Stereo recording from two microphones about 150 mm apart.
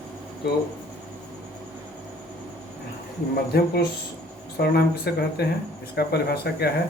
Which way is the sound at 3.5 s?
90° left.